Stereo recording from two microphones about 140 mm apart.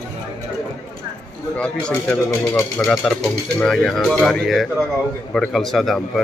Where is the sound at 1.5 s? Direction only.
5° left (ahead or behind).